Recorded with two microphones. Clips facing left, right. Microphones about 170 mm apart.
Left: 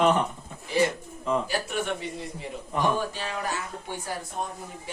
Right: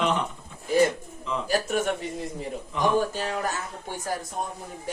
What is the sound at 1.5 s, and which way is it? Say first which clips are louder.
Speech: right 4 dB; 45° right (ahead or behind).